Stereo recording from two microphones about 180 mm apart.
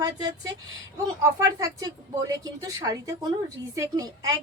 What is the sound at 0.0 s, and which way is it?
A woman's voice, 20° right (ahead or behind).